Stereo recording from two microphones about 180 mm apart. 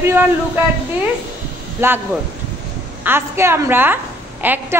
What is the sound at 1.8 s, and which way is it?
Speech, 15° right (ahead or behind).